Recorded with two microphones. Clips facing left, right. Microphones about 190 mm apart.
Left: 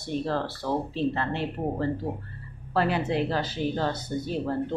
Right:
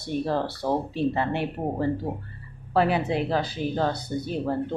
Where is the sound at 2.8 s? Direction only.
15° right (ahead or behind).